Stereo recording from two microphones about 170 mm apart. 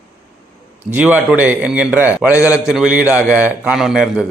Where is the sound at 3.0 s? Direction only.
15° left (ahead or behind).